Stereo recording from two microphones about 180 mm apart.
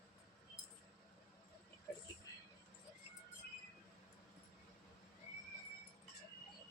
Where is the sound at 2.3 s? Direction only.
20° left (ahead or behind).